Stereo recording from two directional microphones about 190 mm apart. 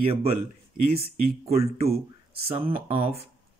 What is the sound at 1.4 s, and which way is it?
Speech, 35° right (ahead or behind).